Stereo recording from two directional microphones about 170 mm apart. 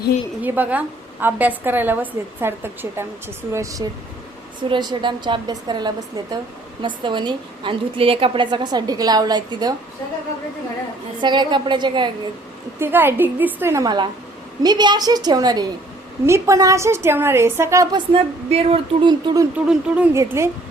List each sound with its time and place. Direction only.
0.4 s a woman's voice: 10° right (ahead or behind)
11.2 s a woman's voice: 25° right (ahead or behind)
12.8 s a woman's voice: 15° right (ahead or behind)
18.1 s speech: 35° right (ahead or behind)
19.5 s a woman's voice: 5° right (ahead or behind)